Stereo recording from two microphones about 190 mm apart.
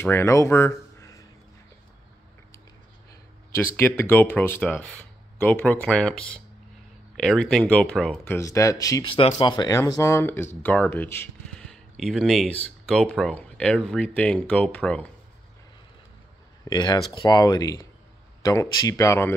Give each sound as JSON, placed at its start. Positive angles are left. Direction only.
{"t": 0.0, "sound": "speech", "side_deg": 15}
{"t": 3.5, "sound": "speech", "side_deg": 10}
{"t": 8.4, "sound": "speech", "side_deg": 15}
{"t": 16.6, "sound": "speech", "side_deg": 20}